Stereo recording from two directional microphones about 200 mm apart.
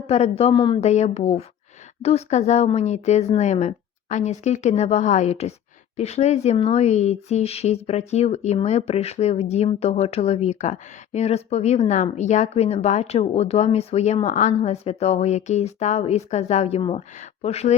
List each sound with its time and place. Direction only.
0.1 s speech: 30° left (ahead or behind)